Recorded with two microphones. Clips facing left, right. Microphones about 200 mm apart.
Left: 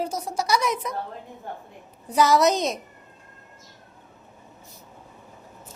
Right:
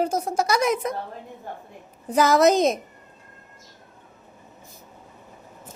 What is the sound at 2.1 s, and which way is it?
Speech, 50° right (ahead or behind).